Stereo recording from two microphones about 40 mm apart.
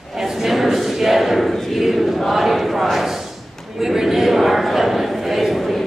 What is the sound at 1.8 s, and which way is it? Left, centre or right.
Chant, centre.